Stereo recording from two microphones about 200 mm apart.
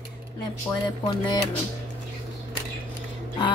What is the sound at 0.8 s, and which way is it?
Speech, 20° left (ahead or behind).